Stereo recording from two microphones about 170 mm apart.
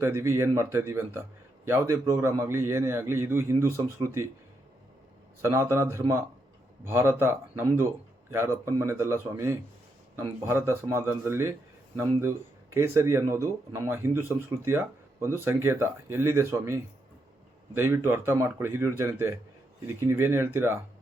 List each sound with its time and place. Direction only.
0.0 s speech: 15° right (ahead or behind)
5.4 s speech: 15° right (ahead or behind)
12.7 s speech: 15° right (ahead or behind)